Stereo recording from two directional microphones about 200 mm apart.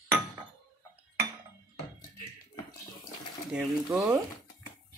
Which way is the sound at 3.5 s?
10° right (ahead or behind).